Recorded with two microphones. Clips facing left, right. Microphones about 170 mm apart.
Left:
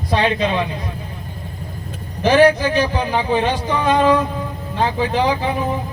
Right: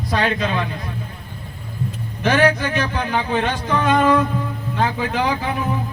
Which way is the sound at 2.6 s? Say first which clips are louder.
Left 4 dB; 30° left (ahead or behind).